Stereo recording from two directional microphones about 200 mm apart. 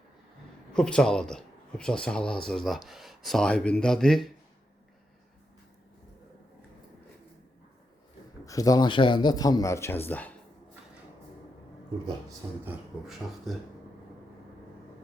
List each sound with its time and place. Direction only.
0.7 s speech: 5° left (ahead or behind)
8.4 s speech: 15° left (ahead or behind)
12.6 s speech: centre (ahead or behind)